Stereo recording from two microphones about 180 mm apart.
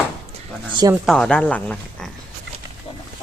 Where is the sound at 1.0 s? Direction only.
5° left (ahead or behind).